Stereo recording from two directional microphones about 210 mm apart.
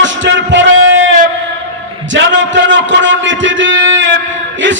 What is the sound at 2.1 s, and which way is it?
A man's voice, 60° right (ahead or behind).